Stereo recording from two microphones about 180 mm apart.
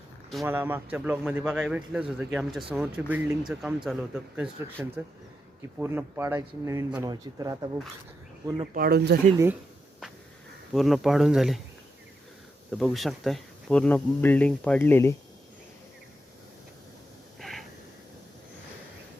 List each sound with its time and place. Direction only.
0.4 s a man's voice: 10° right (ahead or behind)
8.7 s speech: 60° right (ahead or behind)
10.8 s a man's voice: centre (ahead or behind)
12.7 s speech: centre (ahead or behind)
17.4 s a sound: centre (ahead or behind)